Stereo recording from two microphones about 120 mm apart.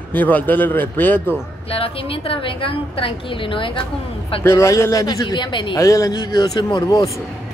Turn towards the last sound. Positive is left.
turn(degrees=30)  # may be behind; listen again after turning